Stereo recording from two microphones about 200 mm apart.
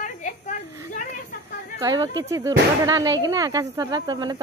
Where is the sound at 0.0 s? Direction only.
40° left (ahead or behind).